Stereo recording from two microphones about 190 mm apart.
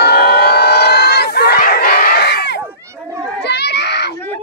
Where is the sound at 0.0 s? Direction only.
60° left (ahead or behind).